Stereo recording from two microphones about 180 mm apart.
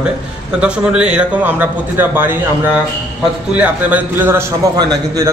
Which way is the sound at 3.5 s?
10° right (ahead or behind).